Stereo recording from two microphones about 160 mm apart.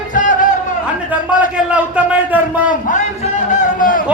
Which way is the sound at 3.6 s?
55° left (ahead or behind).